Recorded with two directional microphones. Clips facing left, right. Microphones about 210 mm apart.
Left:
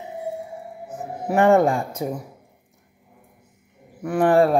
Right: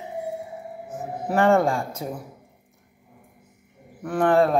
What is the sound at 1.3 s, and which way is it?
Speech, 15° left (ahead or behind).